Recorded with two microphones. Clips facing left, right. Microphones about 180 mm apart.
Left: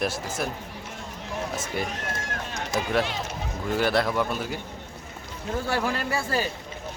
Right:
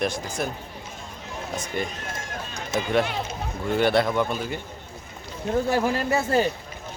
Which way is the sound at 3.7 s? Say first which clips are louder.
Right 3 dB; centre (ahead or behind).